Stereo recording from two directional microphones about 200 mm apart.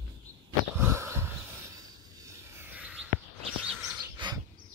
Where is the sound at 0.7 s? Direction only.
15° right (ahead or behind).